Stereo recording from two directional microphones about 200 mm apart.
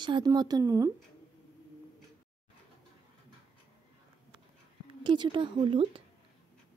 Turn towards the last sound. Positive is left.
turn(degrees=-25)  # may be behind; listen again after turning